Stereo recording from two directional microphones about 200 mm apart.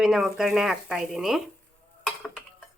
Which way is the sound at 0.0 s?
Centre (ahead or behind).